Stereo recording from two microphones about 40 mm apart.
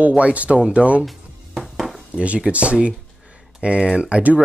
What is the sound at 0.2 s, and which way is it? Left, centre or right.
Speech, right.